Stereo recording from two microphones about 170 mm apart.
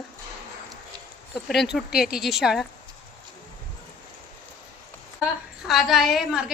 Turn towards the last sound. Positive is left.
turn(degrees=0)  # may be behind; listen again after turning